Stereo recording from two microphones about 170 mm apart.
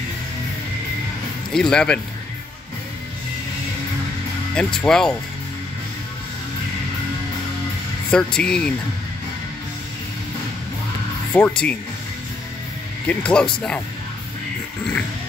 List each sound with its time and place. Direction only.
1.5 s speech: 5° left (ahead or behind)
4.6 s speech: 5° left (ahead or behind)
8.1 s speech: 5° left (ahead or behind)
11.3 s speech: 5° left (ahead or behind)
13.0 s speech: 5° left (ahead or behind)